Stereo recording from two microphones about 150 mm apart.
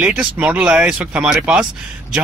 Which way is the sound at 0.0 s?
10° right (ahead or behind).